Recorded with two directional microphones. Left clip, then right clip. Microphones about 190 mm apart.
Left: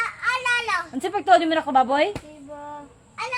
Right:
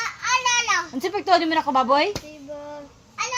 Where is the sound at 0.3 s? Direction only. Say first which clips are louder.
Right 2 dB; 45° left (ahead or behind).